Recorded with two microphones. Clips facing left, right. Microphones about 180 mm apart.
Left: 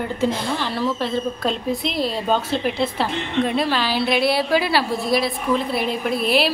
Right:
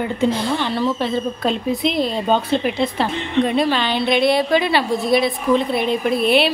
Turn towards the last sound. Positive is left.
turn(degrees=0)  # may be behind; listen again after turning